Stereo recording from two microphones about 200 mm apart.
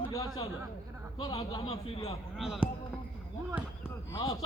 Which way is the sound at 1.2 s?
25° left (ahead or behind).